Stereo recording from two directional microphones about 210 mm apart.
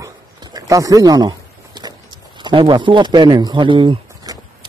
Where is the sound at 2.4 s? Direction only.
25° right (ahead or behind).